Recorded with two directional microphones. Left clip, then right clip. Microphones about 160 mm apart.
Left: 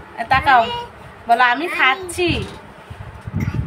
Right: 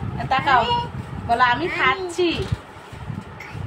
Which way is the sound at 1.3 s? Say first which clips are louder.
Left 3 dB; 45° left (ahead or behind).